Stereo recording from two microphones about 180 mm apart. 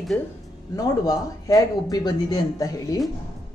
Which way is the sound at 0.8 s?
20° left (ahead or behind).